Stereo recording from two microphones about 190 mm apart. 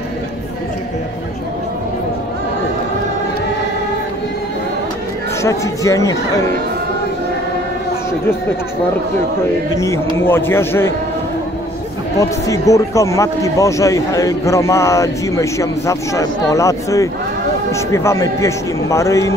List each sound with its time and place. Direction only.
5.4 s speech: 15° left (ahead or behind)
10.1 s speech: 10° left (ahead or behind)
12.2 s speech: 15° left (ahead or behind)